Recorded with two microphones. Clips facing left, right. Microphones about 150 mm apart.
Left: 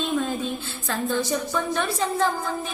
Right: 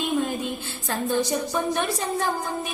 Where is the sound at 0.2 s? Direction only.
15° right (ahead or behind).